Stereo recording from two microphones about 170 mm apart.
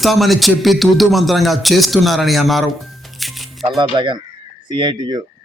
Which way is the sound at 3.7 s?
25° right (ahead or behind).